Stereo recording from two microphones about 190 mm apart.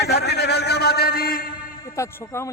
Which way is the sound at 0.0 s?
60° left (ahead or behind).